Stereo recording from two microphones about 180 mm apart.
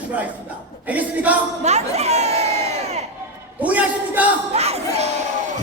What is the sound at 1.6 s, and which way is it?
Speech, 35° right (ahead or behind).